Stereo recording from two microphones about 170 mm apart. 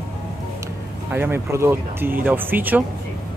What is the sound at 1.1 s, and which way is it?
Speech, 15° right (ahead or behind).